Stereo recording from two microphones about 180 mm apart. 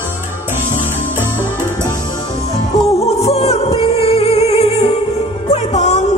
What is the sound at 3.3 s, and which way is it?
Music, 35° left (ahead or behind).